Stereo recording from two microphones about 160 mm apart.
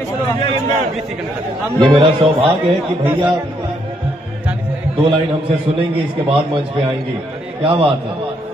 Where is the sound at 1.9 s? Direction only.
35° right (ahead or behind).